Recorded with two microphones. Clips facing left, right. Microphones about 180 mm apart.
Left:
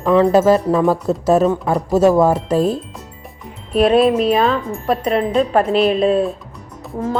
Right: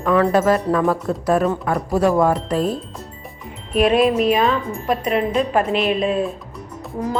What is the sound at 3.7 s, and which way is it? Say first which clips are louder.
A woman's voice: left 3 dB; 30° left (ahead or behind).